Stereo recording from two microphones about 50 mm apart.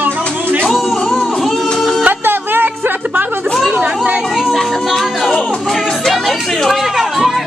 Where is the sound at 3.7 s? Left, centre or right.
Right.